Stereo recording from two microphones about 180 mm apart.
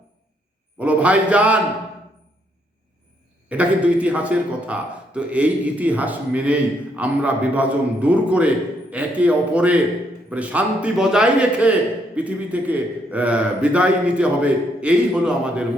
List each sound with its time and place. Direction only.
0.8 s a man's voice: 10° right (ahead or behind)
3.5 s a man's voice: 5° right (ahead or behind)